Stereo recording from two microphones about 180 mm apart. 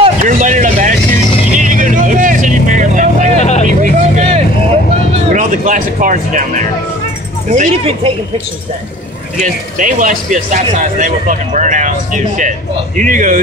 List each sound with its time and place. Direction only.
0.2 s vehicle: 45° right (ahead or behind)
3.3 s vehicle: 40° left (ahead or behind)
3.6 s vehicle: 40° right (ahead or behind)
5.3 s speech: 45° right (ahead or behind)
9.4 s speech: 45° right (ahead or behind)